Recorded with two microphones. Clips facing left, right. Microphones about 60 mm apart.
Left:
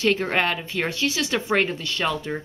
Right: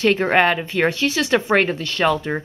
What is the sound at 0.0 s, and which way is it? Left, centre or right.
Speech, right.